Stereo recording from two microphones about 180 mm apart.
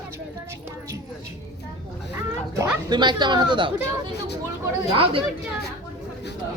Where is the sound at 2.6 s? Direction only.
25° right (ahead or behind).